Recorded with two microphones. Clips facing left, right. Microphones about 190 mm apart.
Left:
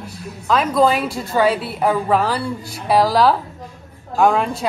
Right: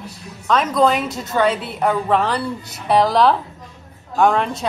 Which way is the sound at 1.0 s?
20° right (ahead or behind).